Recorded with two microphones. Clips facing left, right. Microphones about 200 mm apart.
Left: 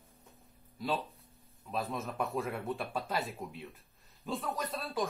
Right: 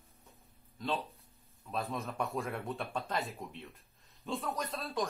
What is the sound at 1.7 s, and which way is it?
Speech, centre (ahead or behind).